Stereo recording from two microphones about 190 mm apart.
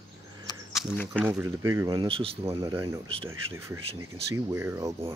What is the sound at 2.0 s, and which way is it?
Speech, 30° right (ahead or behind).